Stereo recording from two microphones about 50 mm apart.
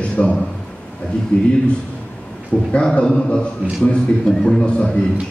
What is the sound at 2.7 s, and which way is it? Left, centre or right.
A man's voice, left.